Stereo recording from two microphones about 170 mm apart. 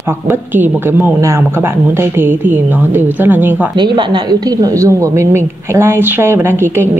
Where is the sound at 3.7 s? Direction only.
25° right (ahead or behind).